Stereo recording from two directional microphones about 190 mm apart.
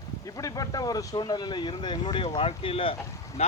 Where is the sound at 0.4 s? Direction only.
20° left (ahead or behind).